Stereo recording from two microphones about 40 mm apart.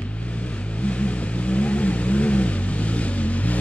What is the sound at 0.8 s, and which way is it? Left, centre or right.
Vehicle, left.